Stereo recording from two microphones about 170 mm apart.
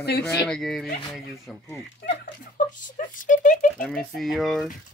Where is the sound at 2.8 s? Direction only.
50° left (ahead or behind).